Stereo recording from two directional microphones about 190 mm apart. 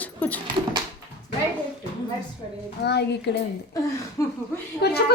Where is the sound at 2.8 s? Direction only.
60° left (ahead or behind).